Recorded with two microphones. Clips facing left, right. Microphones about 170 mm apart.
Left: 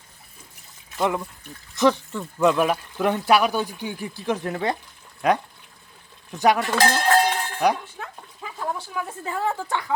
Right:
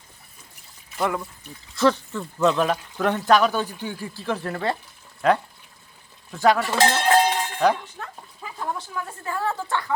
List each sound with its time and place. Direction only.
0.9 s speech: 20° left (ahead or behind)
6.7 s cowbell: 20° right (ahead or behind)
7.6 s speech: 15° left (ahead or behind)
8.4 s a sound: centre (ahead or behind)
9.2 s speech: 20° left (ahead or behind)